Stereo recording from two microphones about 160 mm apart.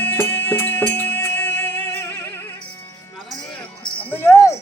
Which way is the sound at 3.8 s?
10° left (ahead or behind).